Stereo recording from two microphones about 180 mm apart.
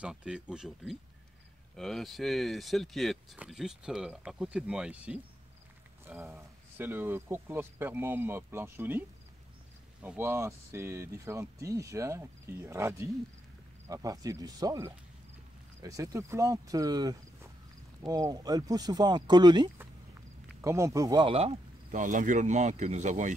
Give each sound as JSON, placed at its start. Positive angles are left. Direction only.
{"t": 0.0, "sound": "speech", "side_deg": -5}
{"t": 10.0, "sound": "speech", "side_deg": -15}
{"t": 21.9, "sound": "speech", "side_deg": -45}